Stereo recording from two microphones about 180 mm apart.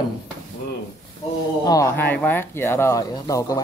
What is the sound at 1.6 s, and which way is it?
Speech, 20° left (ahead or behind).